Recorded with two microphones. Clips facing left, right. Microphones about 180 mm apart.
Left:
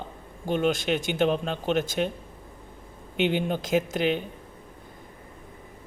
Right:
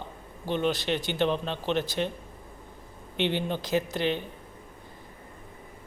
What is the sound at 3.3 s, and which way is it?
Speech, 50° left (ahead or behind).